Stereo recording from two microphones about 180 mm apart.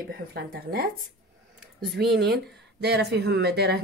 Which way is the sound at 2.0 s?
65° right (ahead or behind).